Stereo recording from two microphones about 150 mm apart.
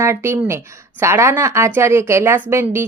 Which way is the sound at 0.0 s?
20° right (ahead or behind).